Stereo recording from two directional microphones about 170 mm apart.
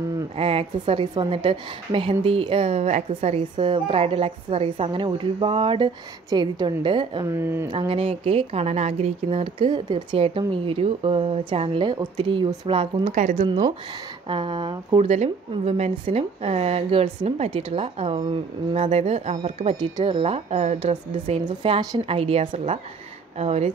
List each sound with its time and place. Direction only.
0.4 s speech: 35° right (ahead or behind)
7.2 s speech: 15° right (ahead or behind)
7.7 s speech: 30° right (ahead or behind)
13.1 s speech: 45° right (ahead or behind)
13.5 s speech: 25° right (ahead or behind)
15.0 s speech: 40° right (ahead or behind)